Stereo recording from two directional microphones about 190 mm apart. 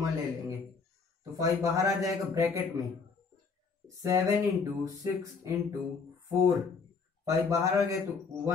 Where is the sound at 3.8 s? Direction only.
15° right (ahead or behind).